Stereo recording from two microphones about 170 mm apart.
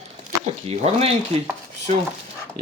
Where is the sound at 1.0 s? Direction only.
35° right (ahead or behind).